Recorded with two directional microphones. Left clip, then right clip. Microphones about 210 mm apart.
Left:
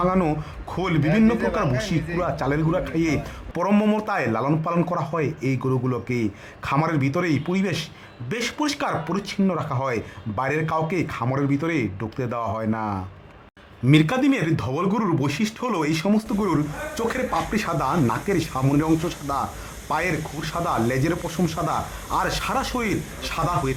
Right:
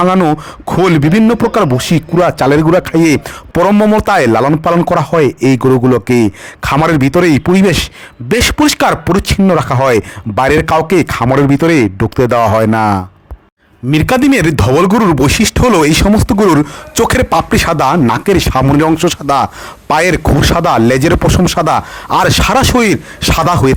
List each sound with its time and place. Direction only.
0.0 s speech: 50° right (ahead or behind)
13.9 s speech: 40° right (ahead or behind)